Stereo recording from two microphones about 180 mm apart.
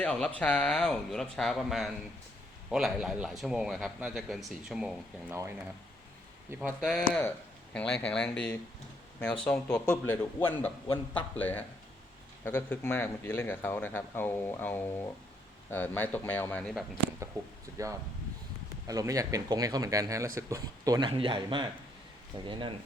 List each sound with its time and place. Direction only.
0.0 s a man's voice: 5° left (ahead or behind)
5.3 s speech: 15° right (ahead or behind)
6.6 s a man's voice: centre (ahead or behind)
18.9 s speech: 20° right (ahead or behind)